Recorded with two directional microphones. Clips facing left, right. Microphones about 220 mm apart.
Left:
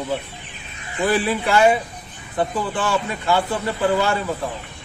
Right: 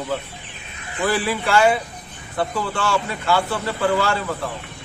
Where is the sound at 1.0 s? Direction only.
20° left (ahead or behind).